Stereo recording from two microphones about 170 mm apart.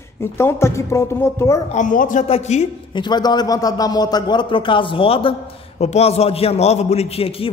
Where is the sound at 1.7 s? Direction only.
50° left (ahead or behind).